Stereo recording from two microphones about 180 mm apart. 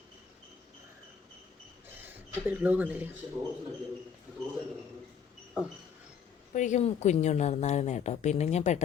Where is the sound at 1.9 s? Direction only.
10° right (ahead or behind).